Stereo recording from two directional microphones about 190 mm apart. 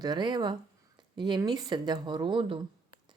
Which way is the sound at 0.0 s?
20° right (ahead or behind).